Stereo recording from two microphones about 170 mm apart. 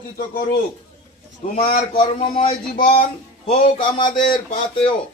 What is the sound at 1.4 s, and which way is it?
Speech, 45° left (ahead or behind).